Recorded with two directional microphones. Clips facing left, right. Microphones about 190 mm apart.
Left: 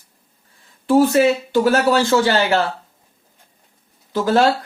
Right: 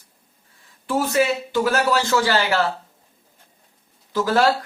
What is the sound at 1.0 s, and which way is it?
Speech, 35° left (ahead or behind).